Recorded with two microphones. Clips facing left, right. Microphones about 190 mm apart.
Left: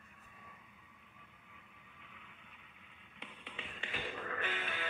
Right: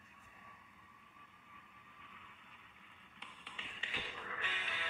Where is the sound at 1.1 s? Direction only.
65° left (ahead or behind).